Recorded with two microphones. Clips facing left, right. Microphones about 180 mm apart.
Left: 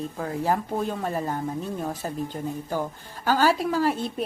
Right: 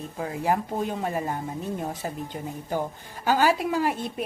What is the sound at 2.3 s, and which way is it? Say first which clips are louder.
Speech: left 3 dB; 5° right (ahead or behind).